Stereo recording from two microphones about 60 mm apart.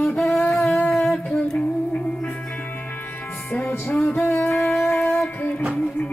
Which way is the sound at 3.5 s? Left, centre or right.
Left.